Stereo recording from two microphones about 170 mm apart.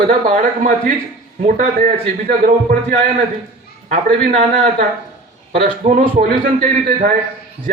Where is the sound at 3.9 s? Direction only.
35° right (ahead or behind).